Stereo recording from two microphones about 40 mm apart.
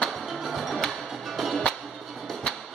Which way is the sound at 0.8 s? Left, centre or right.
Centre.